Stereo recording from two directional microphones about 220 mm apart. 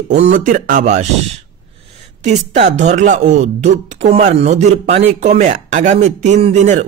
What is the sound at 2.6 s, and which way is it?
Speech, 30° right (ahead or behind).